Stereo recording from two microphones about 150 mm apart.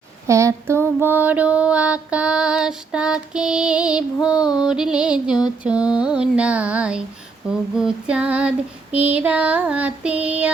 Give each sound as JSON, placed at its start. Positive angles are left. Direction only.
{"t": 0.3, "sound": "female singing", "side_deg": -20}